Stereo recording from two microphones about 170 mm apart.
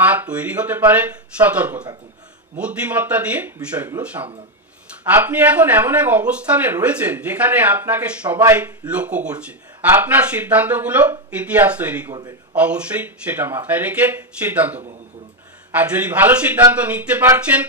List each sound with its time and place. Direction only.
0.0 s speech: 10° right (ahead or behind)
12.1 s a man's voice: 20° right (ahead or behind)
12.5 s speech: 10° right (ahead or behind)